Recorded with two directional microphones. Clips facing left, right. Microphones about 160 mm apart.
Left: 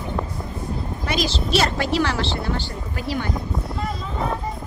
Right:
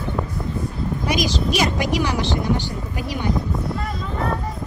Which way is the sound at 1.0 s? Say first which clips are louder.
Right 2 dB; 15° right (ahead or behind).